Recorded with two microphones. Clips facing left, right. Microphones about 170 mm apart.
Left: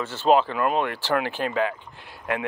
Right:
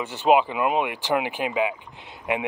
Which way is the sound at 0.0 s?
15° right (ahead or behind).